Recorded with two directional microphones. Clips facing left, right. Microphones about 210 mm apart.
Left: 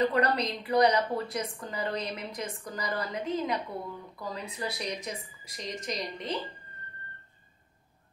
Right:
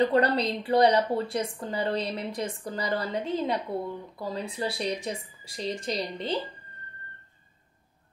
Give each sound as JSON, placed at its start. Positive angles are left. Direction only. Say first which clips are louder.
{"t": 0.0, "sound": "a woman's voice", "louder": "right 3 dB", "side_deg": -30}